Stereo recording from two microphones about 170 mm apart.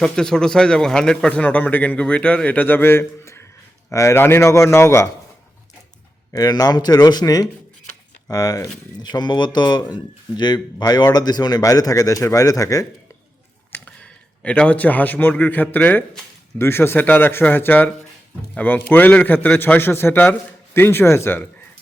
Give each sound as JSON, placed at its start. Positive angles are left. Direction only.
{"t": 0.0, "sound": "a man's voice", "side_deg": 5}
{"t": 6.3, "sound": "speech", "side_deg": 20}
{"t": 13.7, "sound": "a man's voice", "side_deg": 10}